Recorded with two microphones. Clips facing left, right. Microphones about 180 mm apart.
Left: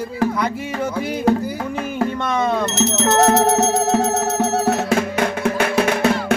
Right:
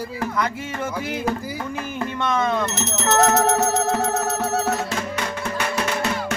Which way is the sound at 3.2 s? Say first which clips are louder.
Left 2 dB; 30° left (ahead or behind).